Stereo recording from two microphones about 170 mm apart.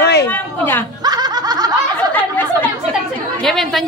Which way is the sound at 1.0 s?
25° right (ahead or behind).